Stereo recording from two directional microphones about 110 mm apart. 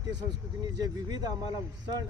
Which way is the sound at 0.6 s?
35° right (ahead or behind).